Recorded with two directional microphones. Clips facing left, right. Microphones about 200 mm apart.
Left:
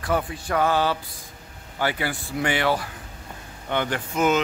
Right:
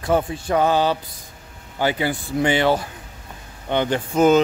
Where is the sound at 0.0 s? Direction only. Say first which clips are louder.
Right 5 dB; 25° right (ahead or behind).